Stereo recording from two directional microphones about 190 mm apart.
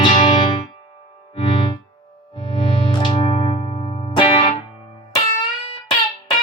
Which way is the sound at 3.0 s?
30° left (ahead or behind).